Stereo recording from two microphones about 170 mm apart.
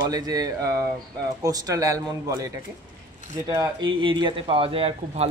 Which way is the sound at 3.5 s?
25° right (ahead or behind).